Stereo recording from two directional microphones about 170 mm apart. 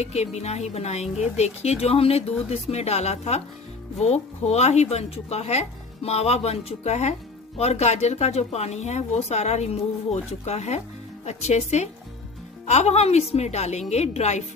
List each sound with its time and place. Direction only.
0.0 s speech: 40° left (ahead or behind)